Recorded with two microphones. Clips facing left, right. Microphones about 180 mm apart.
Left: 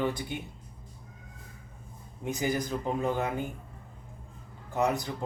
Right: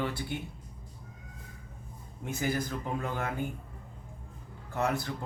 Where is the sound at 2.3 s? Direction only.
15° left (ahead or behind).